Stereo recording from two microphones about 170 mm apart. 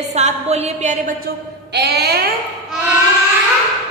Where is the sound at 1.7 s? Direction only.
80° right.